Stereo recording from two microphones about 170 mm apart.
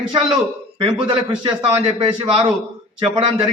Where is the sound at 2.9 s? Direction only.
30° right (ahead or behind).